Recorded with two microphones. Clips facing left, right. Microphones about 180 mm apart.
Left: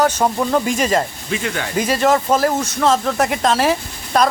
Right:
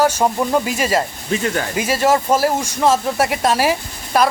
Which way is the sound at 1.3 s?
40° right (ahead or behind).